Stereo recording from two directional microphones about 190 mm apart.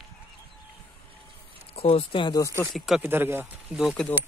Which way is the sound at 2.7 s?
Centre (ahead or behind).